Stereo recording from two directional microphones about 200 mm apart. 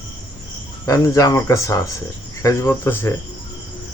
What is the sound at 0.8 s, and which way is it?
Speech, 15° left (ahead or behind).